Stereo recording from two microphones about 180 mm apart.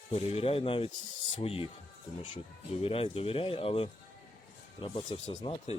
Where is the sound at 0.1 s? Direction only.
35° left (ahead or behind).